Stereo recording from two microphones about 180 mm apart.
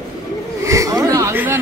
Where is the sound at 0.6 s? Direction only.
20° right (ahead or behind).